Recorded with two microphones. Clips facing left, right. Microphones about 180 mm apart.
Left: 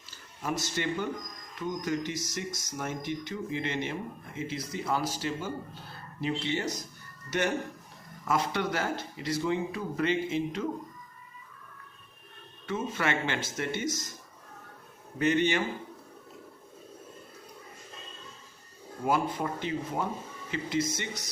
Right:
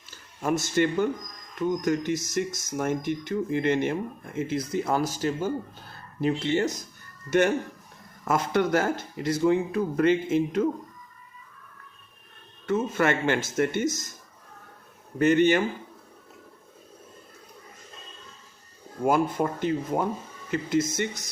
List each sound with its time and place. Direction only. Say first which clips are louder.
0.4 s speech: right 8 dB; 50° right (ahead or behind)
12.6 s speech: right 7 dB; 45° right (ahead or behind)
15.2 s speech: right 6 dB; 45° right (ahead or behind)
19.0 s speech: right 5 dB; 50° right (ahead or behind)